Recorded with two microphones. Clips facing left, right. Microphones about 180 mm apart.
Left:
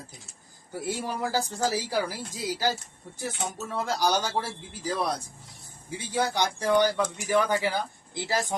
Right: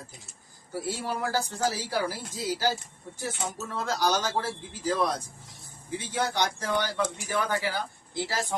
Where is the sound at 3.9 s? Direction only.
10° left (ahead or behind).